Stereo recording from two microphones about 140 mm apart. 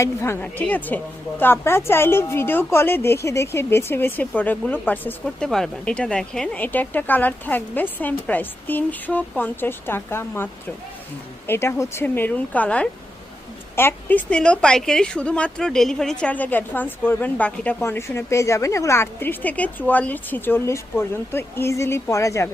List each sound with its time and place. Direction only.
0.0 s a woman's voice: 20° left (ahead or behind)